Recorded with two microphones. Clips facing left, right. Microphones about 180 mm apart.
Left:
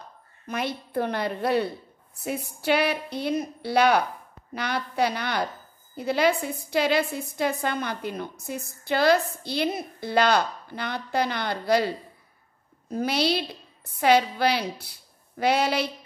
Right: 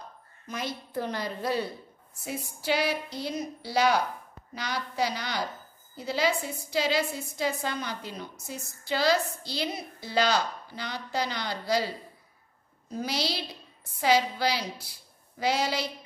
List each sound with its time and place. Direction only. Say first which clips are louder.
0.5 s a woman's voice: left 5 dB; 60° left (ahead or behind)
12.9 s a woman's voice: left 7 dB; 60° left (ahead or behind)